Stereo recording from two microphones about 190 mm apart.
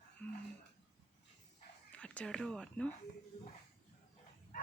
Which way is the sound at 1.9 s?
5° left (ahead or behind).